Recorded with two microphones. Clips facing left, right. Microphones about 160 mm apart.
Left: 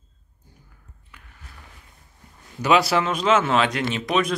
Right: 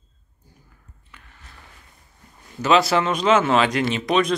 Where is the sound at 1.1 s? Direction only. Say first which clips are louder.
Even; 10° left (ahead or behind).